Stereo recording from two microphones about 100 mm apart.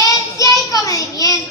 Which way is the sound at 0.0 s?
35° left (ahead or behind).